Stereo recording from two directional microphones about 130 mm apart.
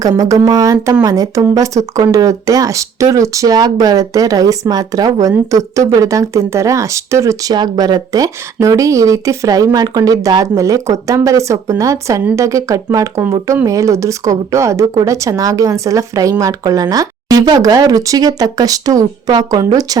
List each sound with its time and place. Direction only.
0.0 s speech: 30° right (ahead or behind)